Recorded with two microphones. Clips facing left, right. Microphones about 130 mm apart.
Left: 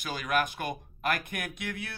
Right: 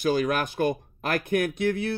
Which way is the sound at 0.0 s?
35° right (ahead or behind).